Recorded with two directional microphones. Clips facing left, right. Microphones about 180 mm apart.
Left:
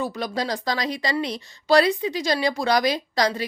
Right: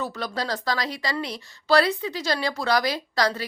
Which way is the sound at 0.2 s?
15° left (ahead or behind).